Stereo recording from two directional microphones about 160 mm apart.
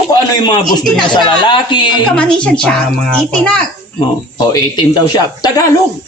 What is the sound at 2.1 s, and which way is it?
A child's voice, 5° left (ahead or behind).